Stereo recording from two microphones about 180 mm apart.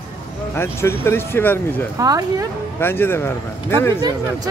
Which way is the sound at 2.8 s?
10° left (ahead or behind).